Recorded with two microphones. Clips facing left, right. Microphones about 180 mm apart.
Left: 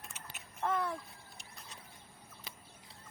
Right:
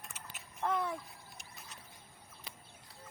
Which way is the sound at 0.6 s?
Centre (ahead or behind).